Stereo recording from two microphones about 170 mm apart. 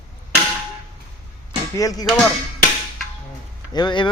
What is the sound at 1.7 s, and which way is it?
Speech, 20° left (ahead or behind).